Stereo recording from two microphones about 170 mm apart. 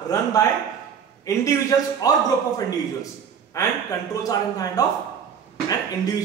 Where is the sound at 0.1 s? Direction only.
20° left (ahead or behind).